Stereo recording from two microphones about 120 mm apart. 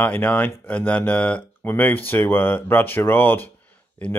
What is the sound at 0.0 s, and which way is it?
Speech, 15° left (ahead or behind).